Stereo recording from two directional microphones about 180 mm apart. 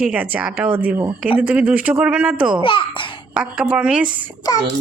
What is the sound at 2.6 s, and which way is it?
Speech, 30° left (ahead or behind).